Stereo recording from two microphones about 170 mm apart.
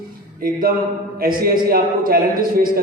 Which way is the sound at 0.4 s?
55° right (ahead or behind).